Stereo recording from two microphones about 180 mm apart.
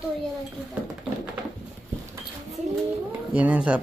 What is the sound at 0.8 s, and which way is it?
Speech, 5° right (ahead or behind).